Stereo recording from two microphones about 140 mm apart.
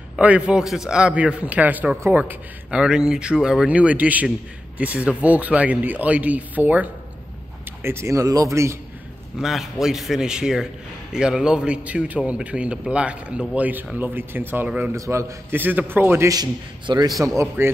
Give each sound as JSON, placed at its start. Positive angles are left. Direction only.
{"t": 0.1, "sound": "a man's voice", "side_deg": -10}
{"t": 9.4, "sound": "a man's voice", "side_deg": -5}
{"t": 17.6, "sound": "a man's voice", "side_deg": -15}